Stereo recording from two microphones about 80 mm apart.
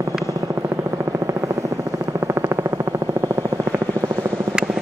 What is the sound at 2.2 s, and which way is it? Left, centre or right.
Music, right.